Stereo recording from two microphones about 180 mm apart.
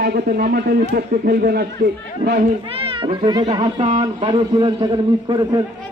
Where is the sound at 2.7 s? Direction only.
30° right (ahead or behind).